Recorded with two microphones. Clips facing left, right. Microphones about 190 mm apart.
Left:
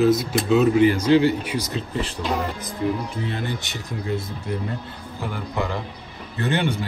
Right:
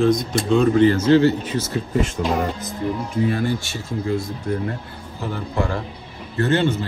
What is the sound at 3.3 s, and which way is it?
Speech, 20° left (ahead or behind).